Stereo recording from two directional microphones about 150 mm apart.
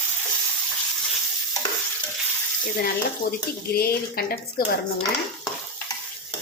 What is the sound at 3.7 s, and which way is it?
Speech, 90° left.